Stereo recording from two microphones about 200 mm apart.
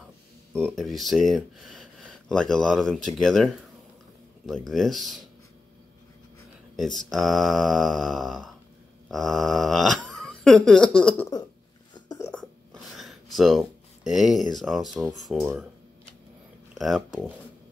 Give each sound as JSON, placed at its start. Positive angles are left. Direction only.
{"t": 0.7, "sound": "speech", "side_deg": 0}
{"t": 6.8, "sound": "speech", "side_deg": 0}
{"t": 11.9, "sound": "a sound", "side_deg": 20}
{"t": 12.3, "sound": "a sound", "side_deg": 5}
{"t": 15.1, "sound": "speech", "side_deg": 0}
{"t": 16.7, "sound": "speech", "side_deg": 0}